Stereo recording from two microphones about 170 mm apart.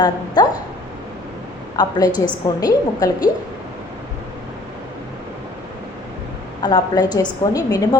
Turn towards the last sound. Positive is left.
turn(degrees=20)  # may be behind; listen again after turning